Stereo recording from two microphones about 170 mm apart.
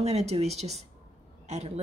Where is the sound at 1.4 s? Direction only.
40° right (ahead or behind).